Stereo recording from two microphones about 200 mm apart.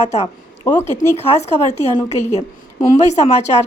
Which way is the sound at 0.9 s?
35° left (ahead or behind).